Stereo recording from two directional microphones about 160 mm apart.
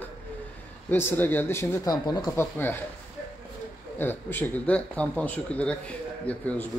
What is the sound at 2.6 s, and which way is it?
Speech, 15° left (ahead or behind).